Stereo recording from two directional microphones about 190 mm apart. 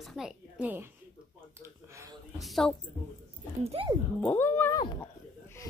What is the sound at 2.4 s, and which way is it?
Speech, centre (ahead or behind).